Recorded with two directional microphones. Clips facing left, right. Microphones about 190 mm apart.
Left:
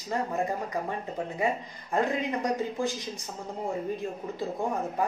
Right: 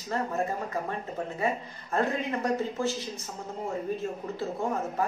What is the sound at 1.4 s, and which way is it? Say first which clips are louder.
Speech: left 1 dB; 15° left (ahead or behind).